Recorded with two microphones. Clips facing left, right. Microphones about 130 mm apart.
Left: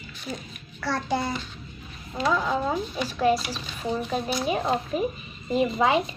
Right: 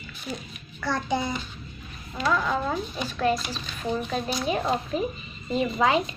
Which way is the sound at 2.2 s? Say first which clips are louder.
Left 1 dB; 20° left (ahead or behind).